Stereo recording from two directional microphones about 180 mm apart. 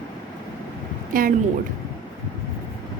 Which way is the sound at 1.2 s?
50° right (ahead or behind).